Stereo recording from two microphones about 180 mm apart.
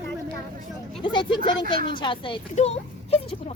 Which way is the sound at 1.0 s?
25° left (ahead or behind).